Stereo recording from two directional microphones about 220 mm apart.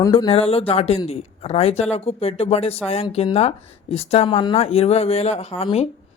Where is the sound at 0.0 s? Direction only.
20° left (ahead or behind).